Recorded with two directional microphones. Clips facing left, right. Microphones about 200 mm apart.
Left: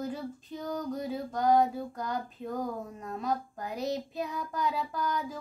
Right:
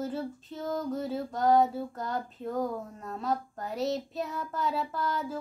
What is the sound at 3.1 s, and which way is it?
Female singing, 15° left (ahead or behind).